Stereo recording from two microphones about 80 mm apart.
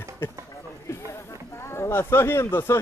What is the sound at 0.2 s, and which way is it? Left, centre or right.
Speech, left.